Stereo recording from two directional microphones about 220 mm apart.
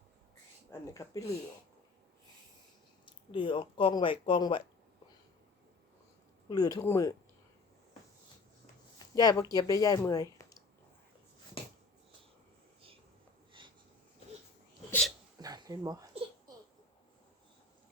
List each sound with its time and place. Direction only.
0.7 s speech: 15° left (ahead or behind)
3.1 s speech: 20° left (ahead or behind)
6.5 s speech: 15° left (ahead or behind)
9.0 s speech: 15° left (ahead or behind)
13.6 s wheeze: 20° right (ahead or behind)
14.8 s hiccup: 5° left (ahead or behind)
15.4 s a sound: 15° right (ahead or behind)